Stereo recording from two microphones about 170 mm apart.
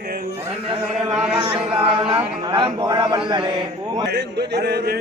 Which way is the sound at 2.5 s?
25° right (ahead or behind).